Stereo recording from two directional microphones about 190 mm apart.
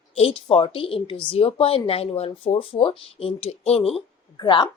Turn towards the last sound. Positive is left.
turn(degrees=20)  # may be behind; listen again after turning